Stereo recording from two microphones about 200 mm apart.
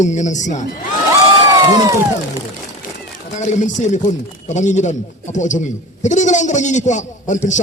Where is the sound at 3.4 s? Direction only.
35° left (ahead or behind).